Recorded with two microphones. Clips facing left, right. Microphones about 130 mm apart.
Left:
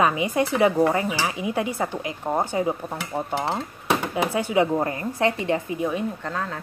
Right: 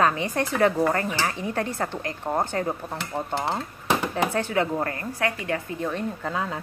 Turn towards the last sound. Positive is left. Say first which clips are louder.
# right 1 dB
turn(degrees=-10)  # may be behind; listen again after turning